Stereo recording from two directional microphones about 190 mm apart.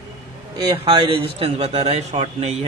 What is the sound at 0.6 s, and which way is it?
A man's voice, 25° right (ahead or behind).